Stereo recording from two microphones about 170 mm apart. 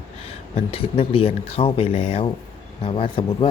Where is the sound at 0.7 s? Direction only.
35° left (ahead or behind).